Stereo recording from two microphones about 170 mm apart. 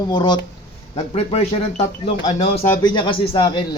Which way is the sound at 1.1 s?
40° left (ahead or behind).